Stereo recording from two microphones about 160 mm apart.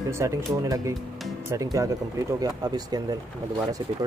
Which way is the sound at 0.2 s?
20° right (ahead or behind).